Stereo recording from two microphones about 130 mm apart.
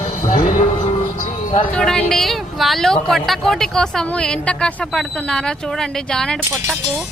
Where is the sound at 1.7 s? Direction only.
5° left (ahead or behind).